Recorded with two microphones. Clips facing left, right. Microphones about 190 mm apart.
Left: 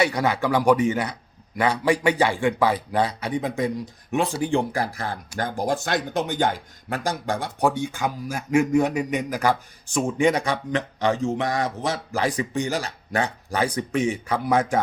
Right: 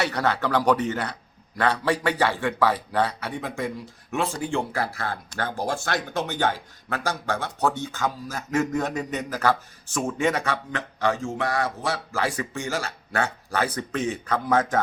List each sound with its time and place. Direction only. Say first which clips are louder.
0.0 s speech: left 3 dB; 10° left (ahead or behind)